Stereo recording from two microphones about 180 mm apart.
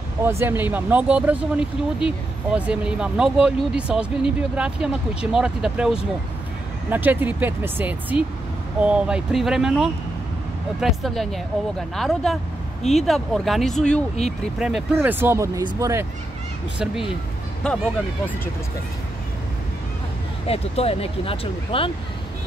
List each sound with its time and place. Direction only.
0.2 s speech: 15° right (ahead or behind)
16.7 s speech: 5° right (ahead or behind)
20.4 s speech: 35° left (ahead or behind)